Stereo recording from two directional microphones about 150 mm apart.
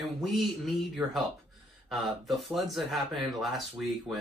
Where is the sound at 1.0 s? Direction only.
10° right (ahead or behind).